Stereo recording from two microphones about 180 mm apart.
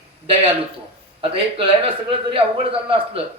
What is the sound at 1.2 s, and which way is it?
A man's voice, 30° right (ahead or behind).